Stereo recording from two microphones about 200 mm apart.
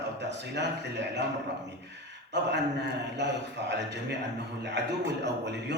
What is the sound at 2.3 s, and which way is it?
Speech, 60° right (ahead or behind).